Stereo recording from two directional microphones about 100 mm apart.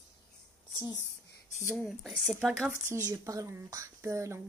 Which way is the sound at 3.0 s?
35° right (ahead or behind).